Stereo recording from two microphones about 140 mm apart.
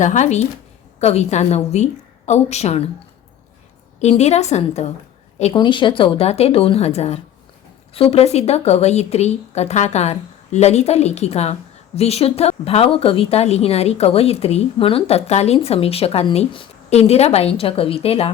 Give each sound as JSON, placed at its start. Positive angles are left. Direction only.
{"t": 0.0, "sound": "speech", "side_deg": 60}
{"t": 4.0, "sound": "speech", "side_deg": 50}
{"t": 5.4, "sound": "speech", "side_deg": 40}